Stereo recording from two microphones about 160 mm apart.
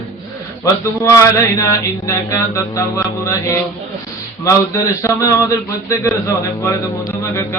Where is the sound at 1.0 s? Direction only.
20° left (ahead or behind).